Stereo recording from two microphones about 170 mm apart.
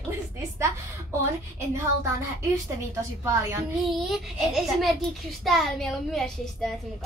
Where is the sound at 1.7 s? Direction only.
15° right (ahead or behind).